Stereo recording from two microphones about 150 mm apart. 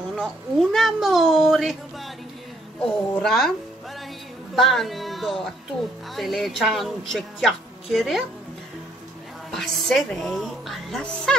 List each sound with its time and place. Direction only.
0.1 s speech: centre (ahead or behind)
4.6 s speech: centre (ahead or behind)
9.5 s speech: centre (ahead or behind)